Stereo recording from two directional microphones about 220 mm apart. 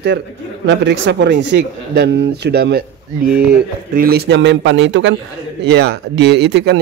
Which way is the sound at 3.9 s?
45° right (ahead or behind).